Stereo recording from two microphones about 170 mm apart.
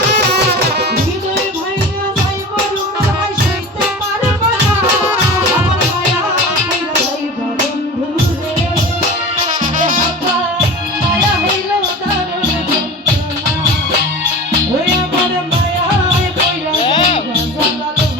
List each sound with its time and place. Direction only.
16.8 s music: 30° left (ahead or behind)